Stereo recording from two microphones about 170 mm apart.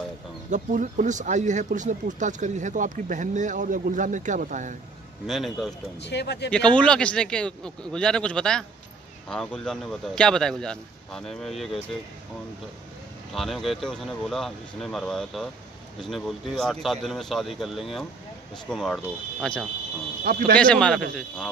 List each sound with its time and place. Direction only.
0.5 s speech: 50° right (ahead or behind)
5.2 s a man's voice: centre (ahead or behind)
6.0 s speech: 80° left
6.5 s a man's voice: 5° left (ahead or behind)
13.3 s a man's voice: centre (ahead or behind)
20.2 s speech: 65° right (ahead or behind)
20.5 s a man's voice: 5° left (ahead or behind)